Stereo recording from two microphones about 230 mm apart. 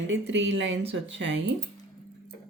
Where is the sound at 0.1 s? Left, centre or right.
Right.